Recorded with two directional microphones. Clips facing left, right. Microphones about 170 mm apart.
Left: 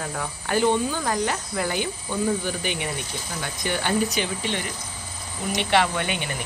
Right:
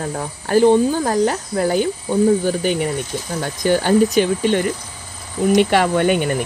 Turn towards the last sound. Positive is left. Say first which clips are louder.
# right 12 dB
turn(degrees=-45)  # may be behind; listen again after turning